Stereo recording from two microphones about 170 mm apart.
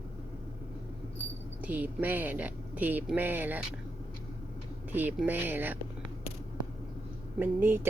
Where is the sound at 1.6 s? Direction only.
10° right (ahead or behind).